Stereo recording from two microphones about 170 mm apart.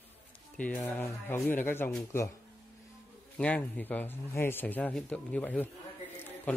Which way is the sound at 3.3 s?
10° left (ahead or behind).